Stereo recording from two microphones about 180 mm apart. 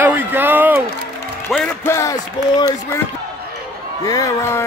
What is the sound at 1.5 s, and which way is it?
A man's voice, 10° left (ahead or behind).